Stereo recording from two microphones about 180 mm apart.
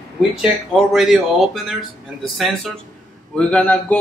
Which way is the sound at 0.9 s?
Centre (ahead or behind).